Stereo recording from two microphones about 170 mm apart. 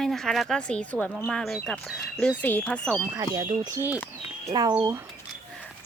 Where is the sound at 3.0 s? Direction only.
15° right (ahead or behind).